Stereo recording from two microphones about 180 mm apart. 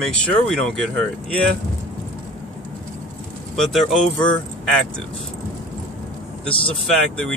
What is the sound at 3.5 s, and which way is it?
Speech, centre (ahead or behind).